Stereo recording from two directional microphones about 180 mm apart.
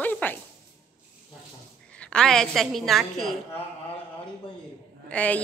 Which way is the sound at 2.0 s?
5° left (ahead or behind).